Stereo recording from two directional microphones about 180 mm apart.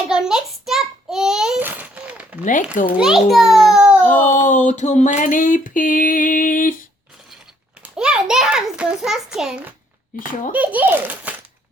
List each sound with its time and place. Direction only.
0.1 s babbling: 5° right (ahead or behind)
2.4 s speech: 45° left (ahead or behind)
3.0 s a child's voice: centre (ahead or behind)
4.1 s a sound: 45° left (ahead or behind)
7.8 s a sound: 5° right (ahead or behind)
10.1 s speech: 45° left (ahead or behind)
10.5 s a child's voice: 10° right (ahead or behind)